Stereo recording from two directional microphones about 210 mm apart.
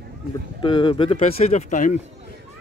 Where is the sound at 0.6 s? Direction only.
25° left (ahead or behind).